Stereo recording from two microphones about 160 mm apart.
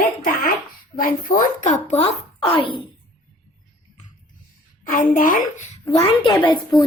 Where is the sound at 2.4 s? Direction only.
30° left (ahead or behind).